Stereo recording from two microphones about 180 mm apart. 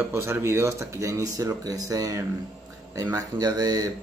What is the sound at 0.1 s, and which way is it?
Speech, 15° right (ahead or behind).